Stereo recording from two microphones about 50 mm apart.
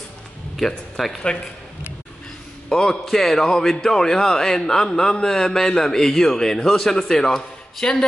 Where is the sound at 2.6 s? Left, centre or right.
Centre.